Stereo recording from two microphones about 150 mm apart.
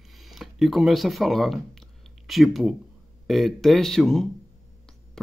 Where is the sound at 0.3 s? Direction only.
Centre (ahead or behind).